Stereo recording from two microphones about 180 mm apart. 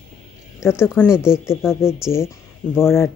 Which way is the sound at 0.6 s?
15° left (ahead or behind).